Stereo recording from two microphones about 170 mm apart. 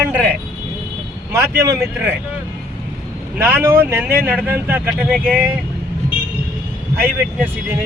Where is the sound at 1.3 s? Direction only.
15° right (ahead or behind).